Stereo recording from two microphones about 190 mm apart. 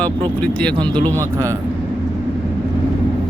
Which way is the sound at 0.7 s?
25° right (ahead or behind).